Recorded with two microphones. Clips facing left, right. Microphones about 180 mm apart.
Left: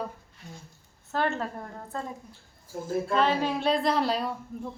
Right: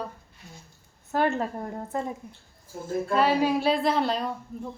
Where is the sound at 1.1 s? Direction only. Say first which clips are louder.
Right 4 dB; 10° right (ahead or behind).